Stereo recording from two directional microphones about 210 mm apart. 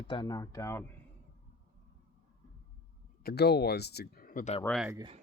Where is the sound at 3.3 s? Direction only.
50° left (ahead or behind).